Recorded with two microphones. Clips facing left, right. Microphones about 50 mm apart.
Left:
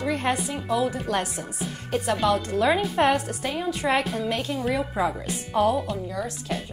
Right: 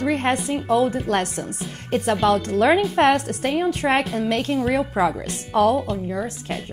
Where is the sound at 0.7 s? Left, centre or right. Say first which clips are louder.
Right 5 dB; right.